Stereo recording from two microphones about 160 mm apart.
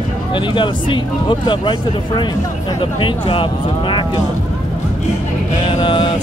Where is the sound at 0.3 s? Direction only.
30° left (ahead or behind).